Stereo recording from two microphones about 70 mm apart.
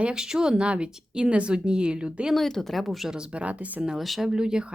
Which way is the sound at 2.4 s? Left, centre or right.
Centre.